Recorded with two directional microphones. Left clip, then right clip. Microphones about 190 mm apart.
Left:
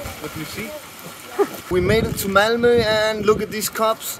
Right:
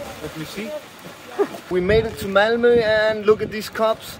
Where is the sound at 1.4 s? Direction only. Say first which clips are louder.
Left 2 dB; 15° left (ahead or behind).